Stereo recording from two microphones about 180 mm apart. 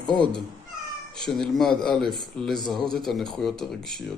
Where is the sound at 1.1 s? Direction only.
Centre (ahead or behind).